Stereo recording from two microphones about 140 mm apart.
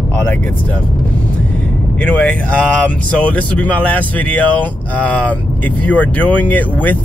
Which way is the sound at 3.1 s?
10° left (ahead or behind).